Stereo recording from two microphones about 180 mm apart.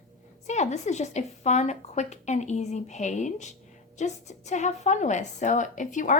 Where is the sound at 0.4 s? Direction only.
40° left (ahead or behind).